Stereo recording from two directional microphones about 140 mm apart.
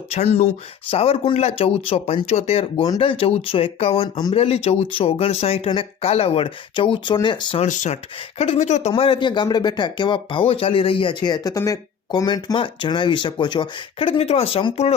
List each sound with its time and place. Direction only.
0.1 s speech: 50° left (ahead or behind); by 7.6 s 35° left (ahead or behind)
7.6 s speech: 55° left (ahead or behind)
8.9 s speech: 35° left (ahead or behind)